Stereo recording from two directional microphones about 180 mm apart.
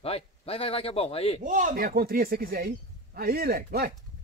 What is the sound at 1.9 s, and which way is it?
Speech, 55° right (ahead or behind).